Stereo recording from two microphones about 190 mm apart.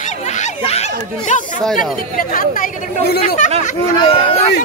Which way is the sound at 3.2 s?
40° left (ahead or behind).